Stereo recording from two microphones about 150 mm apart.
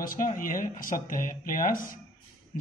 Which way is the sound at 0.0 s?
65° left (ahead or behind).